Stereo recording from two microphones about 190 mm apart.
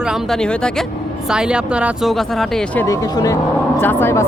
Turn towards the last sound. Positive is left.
turn(degrees=10)  # may be behind; listen again after turning